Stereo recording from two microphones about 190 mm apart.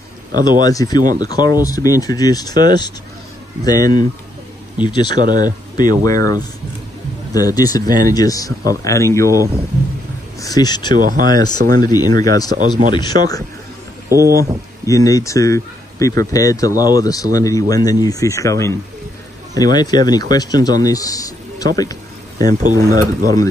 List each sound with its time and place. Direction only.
0.4 s speech: 20° left (ahead or behind)
10.4 s speech: 20° left (ahead or behind)
11.0 s speech: 45° right (ahead or behind)
11.2 s speech: 20° left (ahead or behind)
14.0 s speech: 15° right (ahead or behind)
14.9 s speech: 15° left (ahead or behind)
22.5 s speech: 45° right (ahead or behind)
22.9 s speech: 20° left (ahead or behind)